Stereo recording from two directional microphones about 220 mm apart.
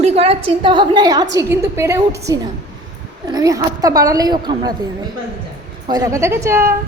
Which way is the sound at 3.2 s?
15° right (ahead or behind).